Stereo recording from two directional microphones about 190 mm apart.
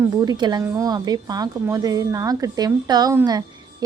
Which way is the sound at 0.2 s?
20° right (ahead or behind).